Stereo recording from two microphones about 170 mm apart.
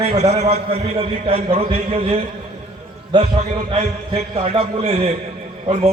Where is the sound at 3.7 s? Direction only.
35° right (ahead or behind).